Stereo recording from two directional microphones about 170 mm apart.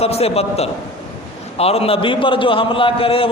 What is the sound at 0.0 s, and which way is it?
A man's voice, 35° left (ahead or behind).